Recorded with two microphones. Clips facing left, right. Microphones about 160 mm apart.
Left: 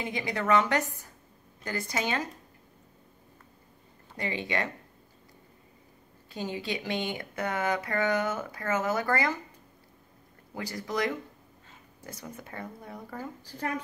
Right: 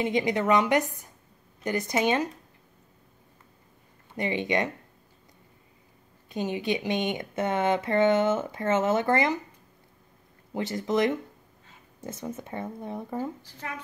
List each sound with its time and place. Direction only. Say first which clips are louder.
0.0 s speech: right 7 dB; 20° right (ahead or behind)
4.2 s speech: right 5 dB; 20° right (ahead or behind)
6.2 s speech: right 5 dB; 20° right (ahead or behind)
10.5 s speech: right 7 dB; 25° right (ahead or behind)